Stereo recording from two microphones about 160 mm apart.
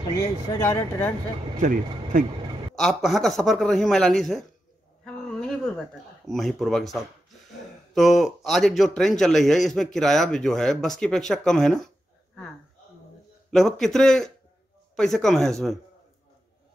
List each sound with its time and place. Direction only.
0.2 s speech: 15° left (ahead or behind)
1.6 s speech: 55° right (ahead or behind)
2.7 s a man's voice: centre (ahead or behind)
5.0 s a sound: 5° left (ahead or behind)
7.9 s a man's voice: centre (ahead or behind)
13.5 s a man's voice: centre (ahead or behind)